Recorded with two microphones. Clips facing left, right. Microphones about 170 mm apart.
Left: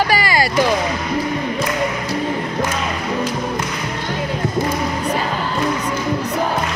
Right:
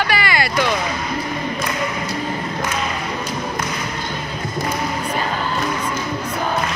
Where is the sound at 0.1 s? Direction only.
40° left (ahead or behind).